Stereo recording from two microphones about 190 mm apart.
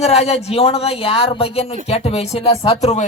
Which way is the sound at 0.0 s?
30° left (ahead or behind).